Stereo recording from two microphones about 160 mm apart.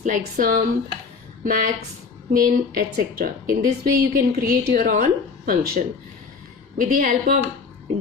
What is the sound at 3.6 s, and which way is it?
A woman's voice, 75° right (ahead or behind).